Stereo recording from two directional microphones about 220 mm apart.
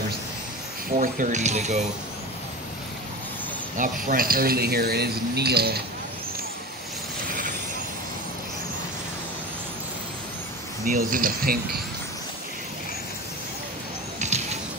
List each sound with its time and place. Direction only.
0.9 s speech: 35° right (ahead or behind)
3.7 s speech: 40° right (ahead or behind)
10.9 s speech: 40° right (ahead or behind)
14.2 s music: 30° right (ahead or behind)